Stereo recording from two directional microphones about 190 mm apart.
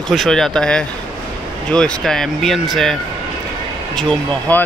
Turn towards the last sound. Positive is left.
turn(degrees=5)  # may be behind; listen again after turning